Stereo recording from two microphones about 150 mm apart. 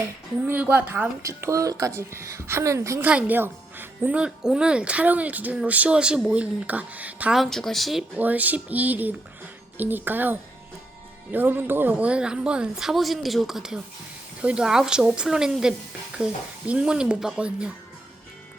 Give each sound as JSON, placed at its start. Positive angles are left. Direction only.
{"t": 0.4, "sound": "a woman's voice", "side_deg": -10}